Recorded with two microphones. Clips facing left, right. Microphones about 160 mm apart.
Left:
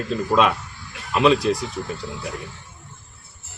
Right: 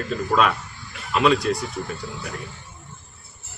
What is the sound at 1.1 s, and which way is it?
Speech, 25° left (ahead or behind).